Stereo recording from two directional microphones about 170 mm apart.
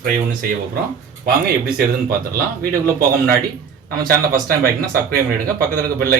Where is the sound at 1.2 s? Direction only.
60° right (ahead or behind).